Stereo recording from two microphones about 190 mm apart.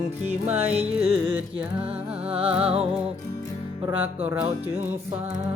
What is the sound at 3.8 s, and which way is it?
Music, 10° right (ahead or behind).